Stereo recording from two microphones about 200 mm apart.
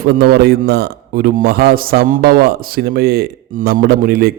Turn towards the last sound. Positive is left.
turn(degrees=-50)  # may be behind; listen again after turning